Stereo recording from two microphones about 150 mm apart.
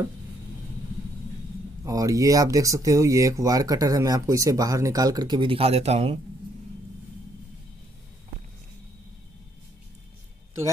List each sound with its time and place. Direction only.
1.9 s speech: 25° right (ahead or behind); by 6.1 s 45° right (ahead or behind)